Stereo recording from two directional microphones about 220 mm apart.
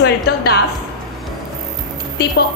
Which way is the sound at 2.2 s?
50° left (ahead or behind).